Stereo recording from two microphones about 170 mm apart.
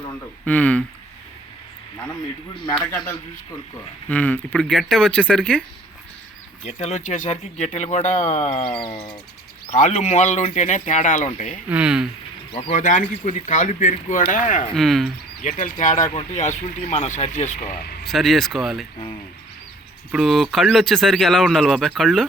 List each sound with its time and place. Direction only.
0.4 s speech: 10° left (ahead or behind)
2.7 s speech: 5° left (ahead or behind)
6.7 s speech: 45° left (ahead or behind)
9.6 s speech: 45° left (ahead or behind)
11.7 s speech: 5° right (ahead or behind)
12.5 s speech: 40° left (ahead or behind)
14.8 s speech: centre (ahead or behind)
15.4 s speech: 45° left (ahead or behind)
18.0 s speech: centre (ahead or behind)
20.1 s speech: centre (ahead or behind)